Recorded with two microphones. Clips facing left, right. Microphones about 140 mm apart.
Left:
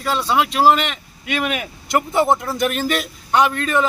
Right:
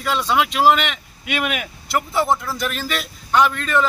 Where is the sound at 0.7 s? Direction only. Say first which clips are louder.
Left 1 dB; centre (ahead or behind).